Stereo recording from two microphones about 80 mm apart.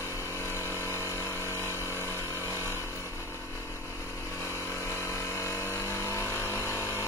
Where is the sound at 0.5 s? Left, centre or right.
Left.